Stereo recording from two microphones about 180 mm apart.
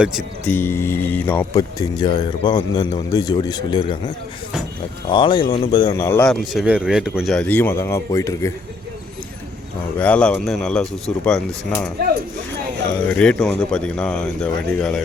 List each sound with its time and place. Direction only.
0.4 s speech: 10° left (ahead or behind)
5.0 s speech: 25° left (ahead or behind)
6.0 s speech: 15° left (ahead or behind)
6.2 s speech: centre (ahead or behind); by 8.5 s 15° left (ahead or behind)
10.0 s speech: 5° left (ahead or behind)
13.1 s speech: 5° left (ahead or behind)